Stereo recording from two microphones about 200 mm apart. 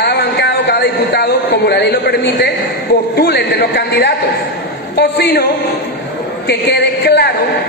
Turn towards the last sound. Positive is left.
turn(degrees=55)  # may be behind; listen again after turning